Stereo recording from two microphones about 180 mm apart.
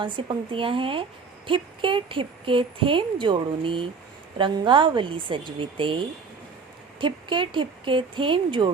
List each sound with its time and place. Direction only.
0.2 s a woman's voice: 30° right (ahead or behind)
7.0 s a woman's voice: 25° right (ahead or behind)